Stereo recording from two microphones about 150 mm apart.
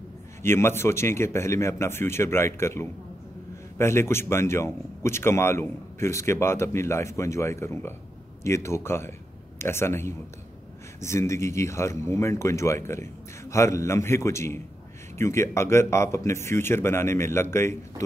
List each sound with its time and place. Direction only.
0.4 s speech: 15° left (ahead or behind)